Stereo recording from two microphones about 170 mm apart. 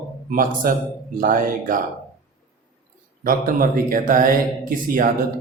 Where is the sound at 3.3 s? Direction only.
55° right (ahead or behind).